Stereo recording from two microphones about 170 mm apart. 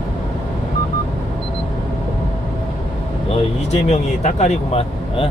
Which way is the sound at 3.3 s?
40° left (ahead or behind).